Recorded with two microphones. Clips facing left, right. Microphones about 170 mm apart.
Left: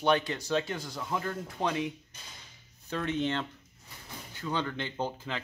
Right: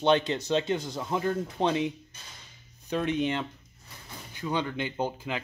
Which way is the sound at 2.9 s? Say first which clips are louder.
Right 3 dB; 15° right (ahead or behind).